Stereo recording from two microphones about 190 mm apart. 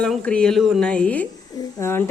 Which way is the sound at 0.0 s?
5° left (ahead or behind).